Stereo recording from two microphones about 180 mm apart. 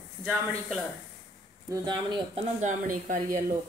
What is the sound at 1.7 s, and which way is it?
Speech, 25° right (ahead or behind).